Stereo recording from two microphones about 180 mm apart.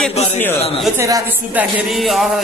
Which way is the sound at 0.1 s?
35° left (ahead or behind).